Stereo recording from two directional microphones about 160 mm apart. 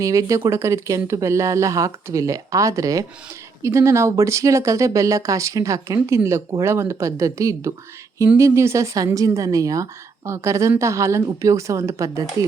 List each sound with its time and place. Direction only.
0.0 s speech: 20° right (ahead or behind)